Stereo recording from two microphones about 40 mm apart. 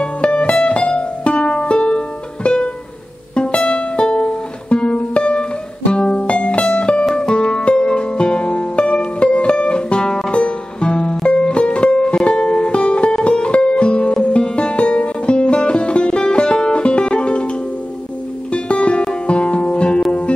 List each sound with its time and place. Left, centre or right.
0.0 s music: left
18.5 s music: left